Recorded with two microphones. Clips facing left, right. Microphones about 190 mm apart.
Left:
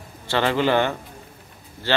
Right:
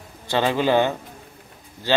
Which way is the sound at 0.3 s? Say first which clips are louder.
Right 1 dB; 15° right (ahead or behind).